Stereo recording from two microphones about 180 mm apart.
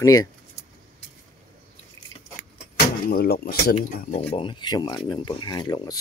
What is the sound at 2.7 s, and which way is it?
Speech, 60° left (ahead or behind).